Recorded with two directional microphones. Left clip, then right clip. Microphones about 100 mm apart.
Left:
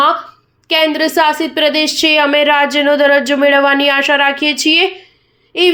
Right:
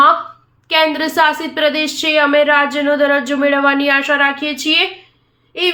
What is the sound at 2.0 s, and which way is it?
Speech, 90° left.